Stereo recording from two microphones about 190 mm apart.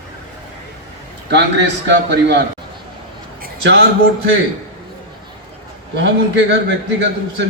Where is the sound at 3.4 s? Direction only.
60° right (ahead or behind).